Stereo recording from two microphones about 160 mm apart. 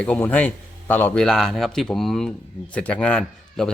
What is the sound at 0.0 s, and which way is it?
Speech, 5° left (ahead or behind).